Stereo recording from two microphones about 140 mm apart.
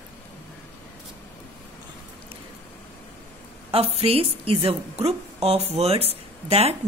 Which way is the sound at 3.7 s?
45° right (ahead or behind).